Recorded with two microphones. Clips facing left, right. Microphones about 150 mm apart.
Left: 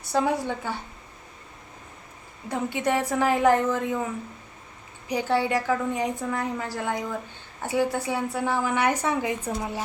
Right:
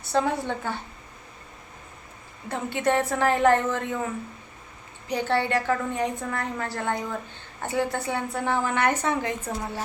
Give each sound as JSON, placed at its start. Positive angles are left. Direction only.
{"t": 0.0, "sound": "a woman's voice", "side_deg": 10}
{"t": 2.5, "sound": "a woman's voice", "side_deg": 10}
{"t": 5.0, "sound": "a woman's voice", "side_deg": 10}